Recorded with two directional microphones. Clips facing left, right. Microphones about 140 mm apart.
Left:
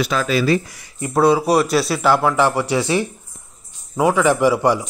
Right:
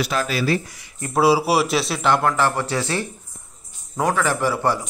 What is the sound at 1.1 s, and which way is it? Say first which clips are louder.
A man's voice: left 2 dB; 5° right (ahead or behind).